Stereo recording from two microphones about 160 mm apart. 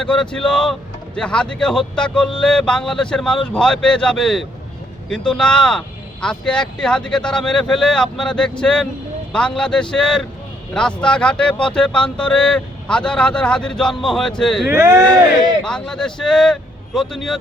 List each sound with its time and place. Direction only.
0.0 s speech: 5° left (ahead or behind)
14.7 s speech: 20° right (ahead or behind)
15.6 s speech: 5° left (ahead or behind)